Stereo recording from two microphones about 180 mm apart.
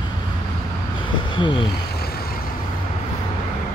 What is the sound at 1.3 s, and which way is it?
Vehicle, 25° left (ahead or behind).